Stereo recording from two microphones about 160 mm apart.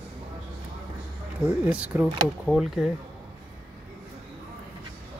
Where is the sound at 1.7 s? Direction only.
10° right (ahead or behind).